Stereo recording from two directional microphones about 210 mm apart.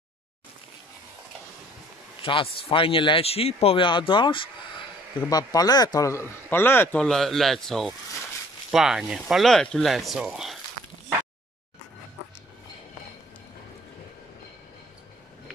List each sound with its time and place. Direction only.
2.2 s a man's voice: 25° left (ahead or behind); by 10.6 s centre (ahead or behind)